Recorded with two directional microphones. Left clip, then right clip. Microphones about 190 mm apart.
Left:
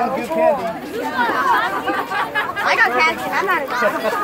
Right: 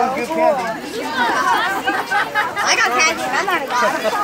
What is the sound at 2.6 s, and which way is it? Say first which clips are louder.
Speech: left 1 dB; 55° right (ahead or behind).